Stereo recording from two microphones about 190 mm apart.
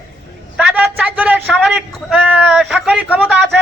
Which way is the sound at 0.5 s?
5° right (ahead or behind).